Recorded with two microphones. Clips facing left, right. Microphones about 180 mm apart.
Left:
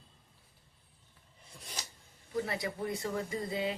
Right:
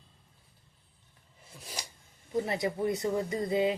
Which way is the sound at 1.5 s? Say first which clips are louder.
Right 3 dB; 10° right (ahead or behind).